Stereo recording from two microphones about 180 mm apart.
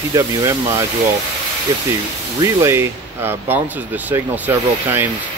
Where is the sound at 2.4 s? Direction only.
15° right (ahead or behind).